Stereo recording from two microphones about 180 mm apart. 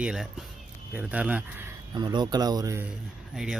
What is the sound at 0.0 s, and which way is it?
A man's voice, 5° right (ahead or behind).